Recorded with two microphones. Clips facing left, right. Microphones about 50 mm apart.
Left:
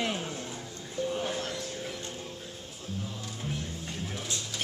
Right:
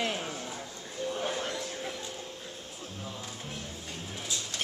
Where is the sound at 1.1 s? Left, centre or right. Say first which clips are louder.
Even; centre.